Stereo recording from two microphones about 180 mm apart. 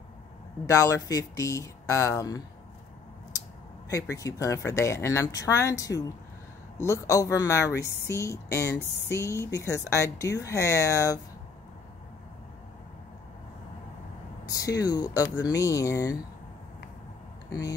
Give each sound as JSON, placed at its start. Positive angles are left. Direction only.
{"t": 0.7, "sound": "speech", "side_deg": 15}
{"t": 3.9, "sound": "speech", "side_deg": 15}
{"t": 14.6, "sound": "speech", "side_deg": 20}
{"t": 17.5, "sound": "speech", "side_deg": 20}